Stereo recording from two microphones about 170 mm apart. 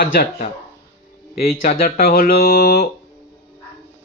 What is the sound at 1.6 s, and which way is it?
Speech, 55° left (ahead or behind).